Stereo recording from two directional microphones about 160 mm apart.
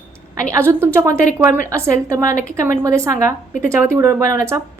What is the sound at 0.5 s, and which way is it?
A woman's voice, 15° right (ahead or behind).